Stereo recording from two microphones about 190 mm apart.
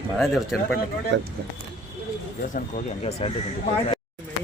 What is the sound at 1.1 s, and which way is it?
Speech, 70° right (ahead or behind).